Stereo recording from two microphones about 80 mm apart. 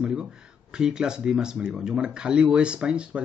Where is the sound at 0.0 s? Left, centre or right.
Centre.